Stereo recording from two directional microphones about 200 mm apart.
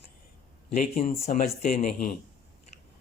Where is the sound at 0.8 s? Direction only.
45° left (ahead or behind).